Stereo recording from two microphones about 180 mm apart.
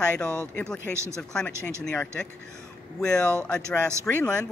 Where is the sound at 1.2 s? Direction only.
5° left (ahead or behind).